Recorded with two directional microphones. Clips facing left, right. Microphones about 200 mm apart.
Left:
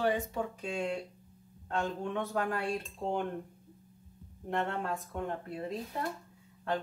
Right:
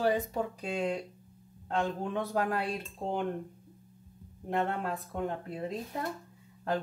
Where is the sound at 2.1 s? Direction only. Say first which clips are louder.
Right 3 dB; 35° right (ahead or behind).